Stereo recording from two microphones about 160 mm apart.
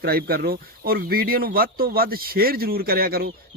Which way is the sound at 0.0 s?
75° right (ahead or behind).